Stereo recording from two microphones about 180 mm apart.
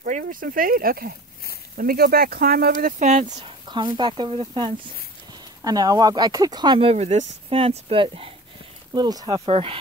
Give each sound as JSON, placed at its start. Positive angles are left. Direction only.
{"t": 0.0, "sound": "speech", "side_deg": -50}
{"t": 3.1, "sound": "speech", "side_deg": -35}
{"t": 3.6, "sound": "speech", "side_deg": -25}